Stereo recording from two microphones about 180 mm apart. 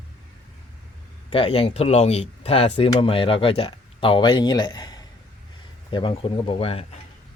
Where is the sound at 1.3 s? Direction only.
30° left (ahead or behind).